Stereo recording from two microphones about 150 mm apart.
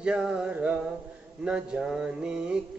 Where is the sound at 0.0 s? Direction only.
5° right (ahead or behind).